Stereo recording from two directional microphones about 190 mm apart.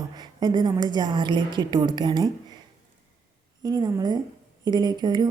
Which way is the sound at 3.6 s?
20° right (ahead or behind).